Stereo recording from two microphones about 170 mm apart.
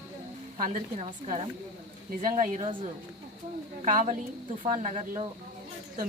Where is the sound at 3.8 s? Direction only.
50° right (ahead or behind).